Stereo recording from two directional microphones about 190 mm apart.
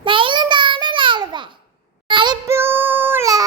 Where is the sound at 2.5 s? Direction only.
10° right (ahead or behind).